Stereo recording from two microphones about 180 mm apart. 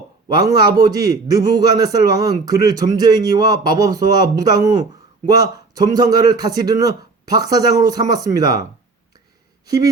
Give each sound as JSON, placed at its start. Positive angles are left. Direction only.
{"t": 0.3, "sound": "a man's voice", "side_deg": -25}
{"t": 3.9, "sound": "speech", "side_deg": 65}
{"t": 4.2, "sound": "a man's voice", "side_deg": -20}